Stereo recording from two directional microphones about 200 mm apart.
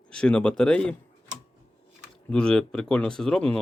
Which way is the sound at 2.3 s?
5° left (ahead or behind).